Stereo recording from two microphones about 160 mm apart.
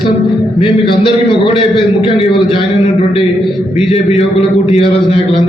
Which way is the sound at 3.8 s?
35° left (ahead or behind).